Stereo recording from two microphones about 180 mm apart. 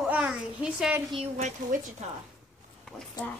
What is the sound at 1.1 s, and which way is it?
Speech, 35° right (ahead or behind).